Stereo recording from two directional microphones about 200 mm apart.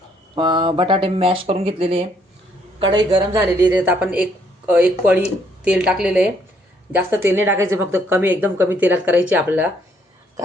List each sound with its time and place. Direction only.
0.3 s speech: 25° right (ahead or behind)
3.3 s speech: 10° right (ahead or behind)